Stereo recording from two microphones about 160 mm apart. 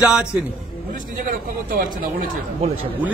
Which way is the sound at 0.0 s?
5° right (ahead or behind).